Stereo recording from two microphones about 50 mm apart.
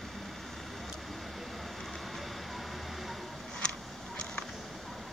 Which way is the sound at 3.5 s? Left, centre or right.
Centre.